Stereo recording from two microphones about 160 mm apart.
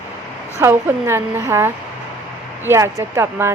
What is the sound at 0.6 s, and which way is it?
A woman's voice, 15° right (ahead or behind).